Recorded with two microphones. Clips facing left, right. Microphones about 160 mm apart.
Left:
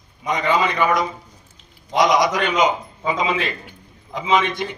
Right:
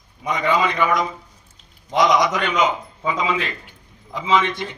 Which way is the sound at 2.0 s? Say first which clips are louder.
Even; 20° left (ahead or behind).